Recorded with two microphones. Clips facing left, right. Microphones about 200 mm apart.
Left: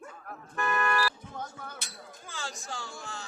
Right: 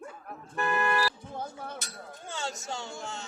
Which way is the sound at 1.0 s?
30° right (ahead or behind).